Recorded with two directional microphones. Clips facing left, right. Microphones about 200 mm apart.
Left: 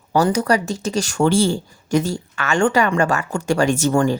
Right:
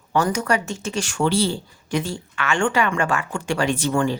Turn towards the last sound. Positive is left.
turn(degrees=45)  # may be behind; listen again after turning